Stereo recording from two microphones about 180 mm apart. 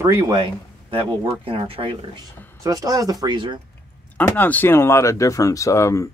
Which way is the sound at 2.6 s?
20° right (ahead or behind).